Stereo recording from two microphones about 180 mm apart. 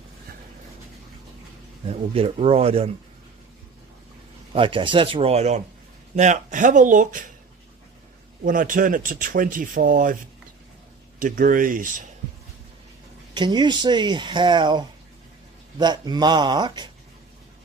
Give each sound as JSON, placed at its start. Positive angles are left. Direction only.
{"t": 1.9, "sound": "speech", "side_deg": -35}
{"t": 4.5, "sound": "speech", "side_deg": -30}
{"t": 8.5, "sound": "speech", "side_deg": -50}
{"t": 11.1, "sound": "speech", "side_deg": -50}
{"t": 13.3, "sound": "speech", "side_deg": -25}